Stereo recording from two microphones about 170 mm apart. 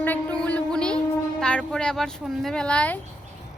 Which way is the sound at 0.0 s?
10° left (ahead or behind).